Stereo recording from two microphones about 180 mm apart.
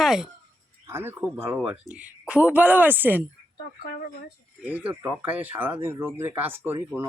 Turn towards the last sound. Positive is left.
turn(degrees=-10)  # may be behind; listen again after turning